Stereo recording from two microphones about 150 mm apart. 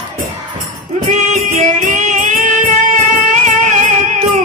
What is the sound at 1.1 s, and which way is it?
Music, 55° right (ahead or behind).